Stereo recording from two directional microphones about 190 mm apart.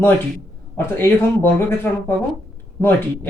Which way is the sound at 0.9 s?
10° left (ahead or behind).